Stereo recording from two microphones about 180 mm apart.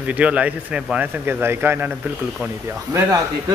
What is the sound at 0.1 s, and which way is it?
Speech, 5° right (ahead or behind).